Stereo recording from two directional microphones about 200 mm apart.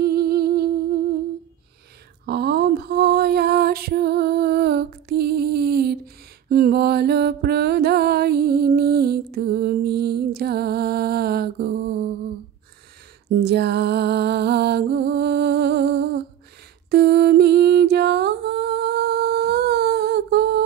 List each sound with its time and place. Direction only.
0.0 s humming: 50° right (ahead or behind)
2.2 s music: 55° right (ahead or behind)
6.5 s mantra: 50° right (ahead or behind)
13.4 s music: 55° right (ahead or behind)